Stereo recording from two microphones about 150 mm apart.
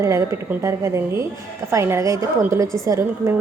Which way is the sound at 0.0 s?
20° right (ahead or behind).